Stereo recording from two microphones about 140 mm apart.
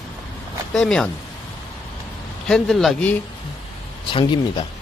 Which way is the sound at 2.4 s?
5° left (ahead or behind).